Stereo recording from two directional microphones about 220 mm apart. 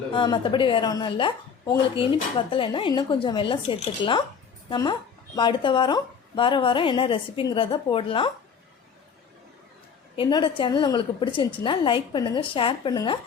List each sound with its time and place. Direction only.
0.1 s a woman's voice: 20° left (ahead or behind)
10.2 s a woman's voice: 20° left (ahead or behind)